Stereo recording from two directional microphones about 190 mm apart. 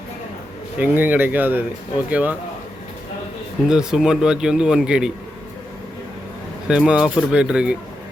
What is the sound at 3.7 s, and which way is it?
Speech, 5° right (ahead or behind).